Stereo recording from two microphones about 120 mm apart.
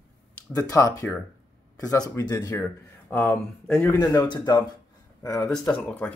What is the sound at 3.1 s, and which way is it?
Speech, 15° left (ahead or behind).